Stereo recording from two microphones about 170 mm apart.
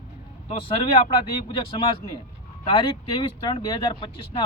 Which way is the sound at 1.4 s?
30° left (ahead or behind).